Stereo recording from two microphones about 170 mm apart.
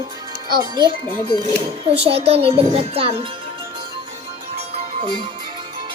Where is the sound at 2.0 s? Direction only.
35° right (ahead or behind).